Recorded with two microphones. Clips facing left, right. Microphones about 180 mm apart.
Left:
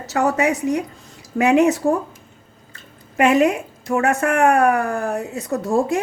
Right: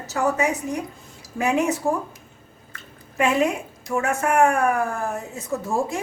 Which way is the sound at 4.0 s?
75° left (ahead or behind).